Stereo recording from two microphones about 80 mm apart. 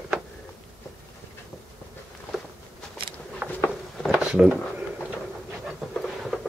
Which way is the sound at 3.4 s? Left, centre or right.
Centre.